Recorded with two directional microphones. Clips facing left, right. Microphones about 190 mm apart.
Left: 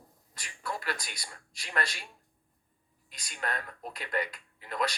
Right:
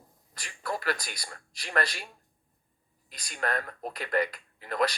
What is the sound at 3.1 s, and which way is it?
Speech, 40° right (ahead or behind).